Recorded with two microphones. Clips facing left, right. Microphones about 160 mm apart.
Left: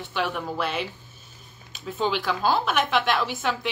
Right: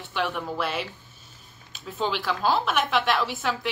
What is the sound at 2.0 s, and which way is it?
A woman's voice, centre (ahead or behind).